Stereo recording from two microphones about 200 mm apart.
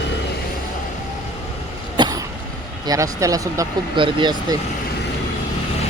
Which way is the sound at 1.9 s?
20° right (ahead or behind).